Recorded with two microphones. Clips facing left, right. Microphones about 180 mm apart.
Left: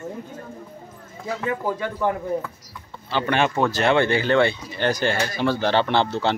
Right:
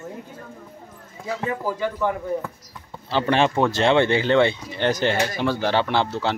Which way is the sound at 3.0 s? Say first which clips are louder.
Right 2 dB; 30° right (ahead or behind).